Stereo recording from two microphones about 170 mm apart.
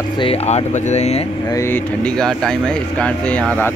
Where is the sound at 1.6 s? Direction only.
10° left (ahead or behind).